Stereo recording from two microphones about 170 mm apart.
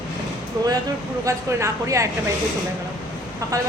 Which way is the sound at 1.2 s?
20° right (ahead or behind).